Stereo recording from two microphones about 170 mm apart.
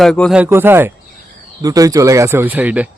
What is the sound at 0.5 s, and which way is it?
Speech, 15° right (ahead or behind).